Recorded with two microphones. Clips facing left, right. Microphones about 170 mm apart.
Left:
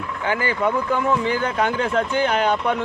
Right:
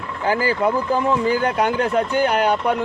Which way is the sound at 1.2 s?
10° right (ahead or behind).